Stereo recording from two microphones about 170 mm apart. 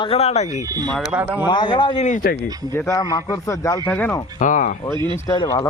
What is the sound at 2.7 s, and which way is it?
Speech, 15° left (ahead or behind).